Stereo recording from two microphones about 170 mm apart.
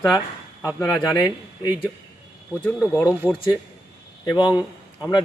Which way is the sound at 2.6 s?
5° left (ahead or behind).